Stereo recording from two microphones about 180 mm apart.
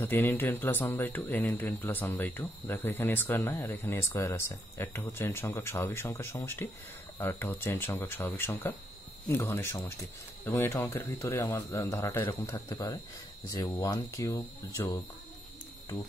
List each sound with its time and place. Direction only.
0.0 s speech: 10° left (ahead or behind)